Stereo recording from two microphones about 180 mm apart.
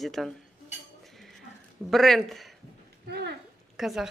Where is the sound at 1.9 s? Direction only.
Centre (ahead or behind).